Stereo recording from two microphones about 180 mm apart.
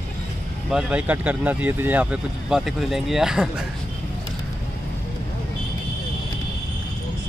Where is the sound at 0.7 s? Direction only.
5° right (ahead or behind).